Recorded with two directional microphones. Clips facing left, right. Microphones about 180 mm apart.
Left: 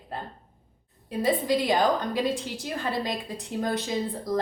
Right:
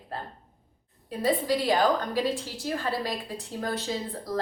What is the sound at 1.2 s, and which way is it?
A woman's voice, 15° left (ahead or behind).